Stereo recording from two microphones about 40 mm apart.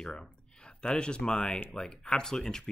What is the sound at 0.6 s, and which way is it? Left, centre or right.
Speech, left.